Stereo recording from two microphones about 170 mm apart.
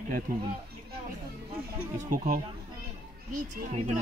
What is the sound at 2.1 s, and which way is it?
Speech, 50° right (ahead or behind).